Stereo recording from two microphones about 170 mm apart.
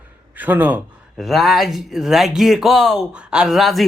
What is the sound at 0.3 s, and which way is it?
Speech, 10° right (ahead or behind).